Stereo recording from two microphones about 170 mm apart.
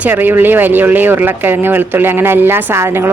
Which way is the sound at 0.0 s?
10° right (ahead or behind).